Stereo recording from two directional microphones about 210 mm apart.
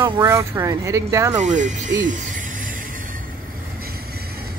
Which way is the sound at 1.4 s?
35° right (ahead or behind).